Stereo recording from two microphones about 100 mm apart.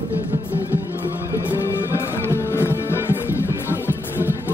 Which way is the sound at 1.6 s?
25° left (ahead or behind).